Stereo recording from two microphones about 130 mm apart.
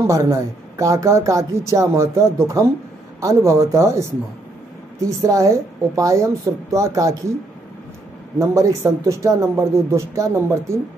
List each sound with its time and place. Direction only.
0.0 s speech: 25° right (ahead or behind)
5.2 s speech: 25° right (ahead or behind)
8.4 s speech: 25° right (ahead or behind)